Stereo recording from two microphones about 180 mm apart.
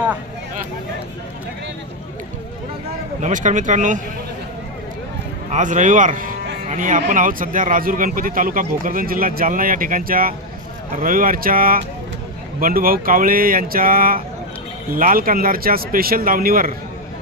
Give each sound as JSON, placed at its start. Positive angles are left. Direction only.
{"t": 3.2, "sound": "speech", "side_deg": -45}
{"t": 5.5, "sound": "speech", "side_deg": -45}